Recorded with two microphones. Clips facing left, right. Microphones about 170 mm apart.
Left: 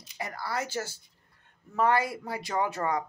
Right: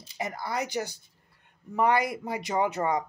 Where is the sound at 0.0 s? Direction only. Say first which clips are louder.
Right 3 dB; 20° right (ahead or behind).